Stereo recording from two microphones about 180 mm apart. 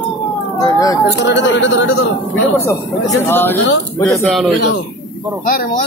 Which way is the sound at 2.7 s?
10° left (ahead or behind).